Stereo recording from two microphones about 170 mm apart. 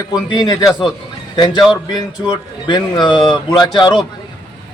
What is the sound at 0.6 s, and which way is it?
Speech, centre (ahead or behind).